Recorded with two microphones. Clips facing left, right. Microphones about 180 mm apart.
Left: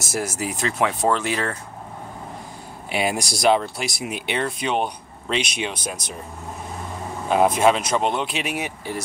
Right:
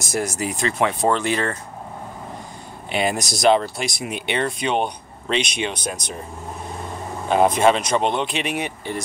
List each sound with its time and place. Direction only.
0.0 s speech: 5° left (ahead or behind)
2.9 s speech: 5° left (ahead or behind)
7.2 s speech: 5° left (ahead or behind)